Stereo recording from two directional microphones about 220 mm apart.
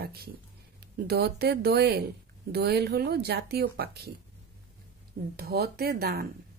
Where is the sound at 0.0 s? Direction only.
45° right (ahead or behind).